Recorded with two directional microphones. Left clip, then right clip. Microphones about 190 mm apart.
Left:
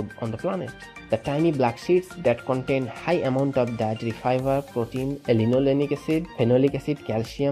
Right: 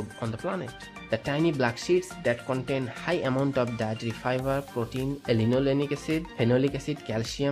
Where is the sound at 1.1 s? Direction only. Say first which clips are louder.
Left 4 dB; 15° left (ahead or behind).